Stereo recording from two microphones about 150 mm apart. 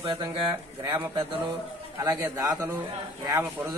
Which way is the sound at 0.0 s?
35° right (ahead or behind).